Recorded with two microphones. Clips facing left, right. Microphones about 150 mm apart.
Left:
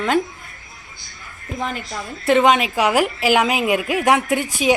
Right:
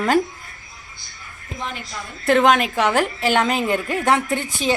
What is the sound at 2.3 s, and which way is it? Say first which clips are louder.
A woman's voice: left 1 dB; centre (ahead or behind).